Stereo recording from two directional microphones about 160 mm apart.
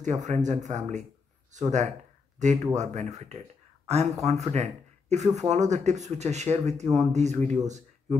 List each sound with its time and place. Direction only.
0.0 s speech: 50° right (ahead or behind)